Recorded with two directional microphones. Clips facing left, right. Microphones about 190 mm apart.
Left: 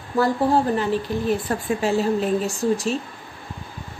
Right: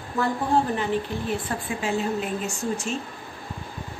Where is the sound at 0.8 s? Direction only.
40° left (ahead or behind).